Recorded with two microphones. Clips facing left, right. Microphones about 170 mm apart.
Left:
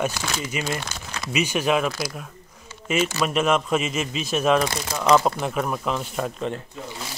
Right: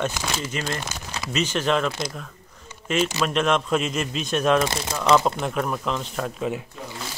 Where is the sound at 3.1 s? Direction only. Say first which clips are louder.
Left 1 dB; 5° left (ahead or behind).